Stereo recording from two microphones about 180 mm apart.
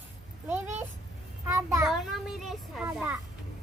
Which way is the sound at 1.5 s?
15° right (ahead or behind).